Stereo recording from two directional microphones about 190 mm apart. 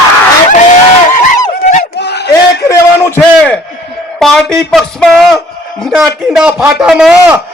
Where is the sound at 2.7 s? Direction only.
15° left (ahead or behind).